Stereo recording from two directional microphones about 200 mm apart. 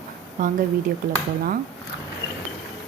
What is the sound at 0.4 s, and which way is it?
Speech, 45° right (ahead or behind).